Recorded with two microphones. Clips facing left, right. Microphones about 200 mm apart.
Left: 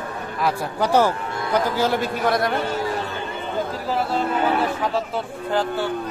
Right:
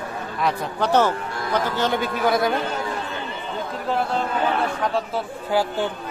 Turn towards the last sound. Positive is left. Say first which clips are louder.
# right 1 dB
turn(degrees=-15)  # may be behind; listen again after turning